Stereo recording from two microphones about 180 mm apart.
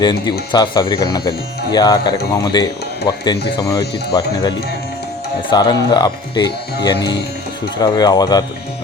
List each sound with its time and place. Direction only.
0.0 s speech: 25° left (ahead or behind)
5.5 s speech: 25° left (ahead or behind)